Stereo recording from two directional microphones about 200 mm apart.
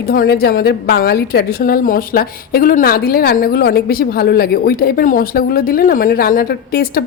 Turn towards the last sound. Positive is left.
turn(degrees=50)  # may be behind; listen again after turning